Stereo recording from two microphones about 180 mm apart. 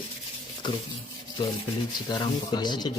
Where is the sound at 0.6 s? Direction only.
25° left (ahead or behind).